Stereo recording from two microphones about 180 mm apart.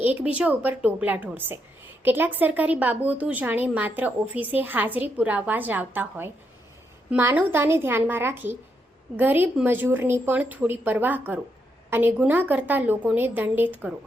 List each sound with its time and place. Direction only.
0.0 s a woman's voice: 10° right (ahead or behind)